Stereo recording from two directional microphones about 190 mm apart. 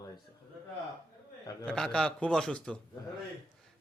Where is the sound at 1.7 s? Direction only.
5° left (ahead or behind).